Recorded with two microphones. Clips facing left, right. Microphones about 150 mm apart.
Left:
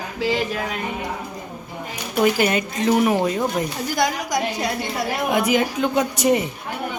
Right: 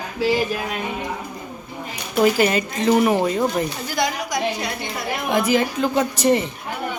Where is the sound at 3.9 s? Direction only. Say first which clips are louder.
Left 1 dB; 45° left (ahead or behind).